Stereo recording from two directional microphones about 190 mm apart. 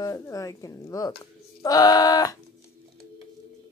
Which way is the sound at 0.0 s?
15° left (ahead or behind).